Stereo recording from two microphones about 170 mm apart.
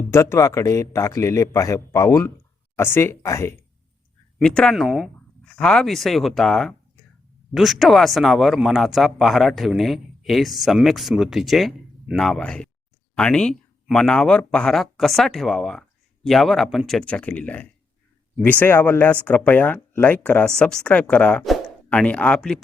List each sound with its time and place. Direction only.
0.1 s speech: 15° left (ahead or behind)
4.4 s speech: 5° left (ahead or behind)